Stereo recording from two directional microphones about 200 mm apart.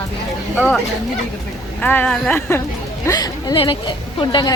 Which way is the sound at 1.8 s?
10° left (ahead or behind).